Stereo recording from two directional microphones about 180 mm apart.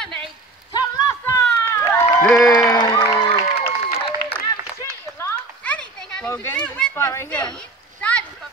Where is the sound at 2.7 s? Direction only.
25° left (ahead or behind).